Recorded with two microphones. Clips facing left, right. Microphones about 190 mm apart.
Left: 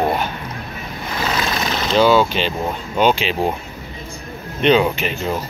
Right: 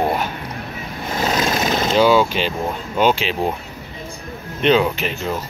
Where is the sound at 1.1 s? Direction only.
40° right (ahead or behind).